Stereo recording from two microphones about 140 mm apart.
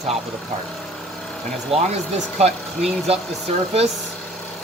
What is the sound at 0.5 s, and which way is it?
Speech, 45° right (ahead or behind).